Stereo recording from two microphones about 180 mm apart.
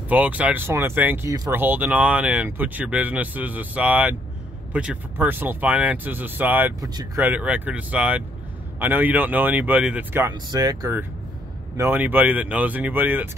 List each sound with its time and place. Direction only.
0.1 s speech: 10° right (ahead or behind)
10.3 s speech: 20° right (ahead or behind)